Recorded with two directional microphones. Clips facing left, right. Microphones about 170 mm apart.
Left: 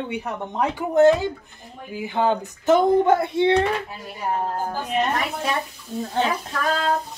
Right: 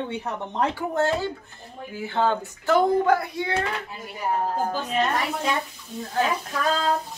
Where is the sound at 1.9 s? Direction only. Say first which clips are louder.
Left 2 dB; 15° left (ahead or behind).